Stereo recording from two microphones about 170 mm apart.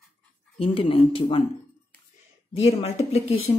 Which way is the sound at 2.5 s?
35° left (ahead or behind).